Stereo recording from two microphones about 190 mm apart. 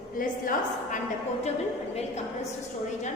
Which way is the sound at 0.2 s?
45° left (ahead or behind).